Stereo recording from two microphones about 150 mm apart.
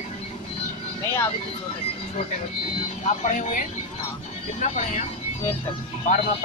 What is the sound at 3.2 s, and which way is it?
Speech, 55° left (ahead or behind).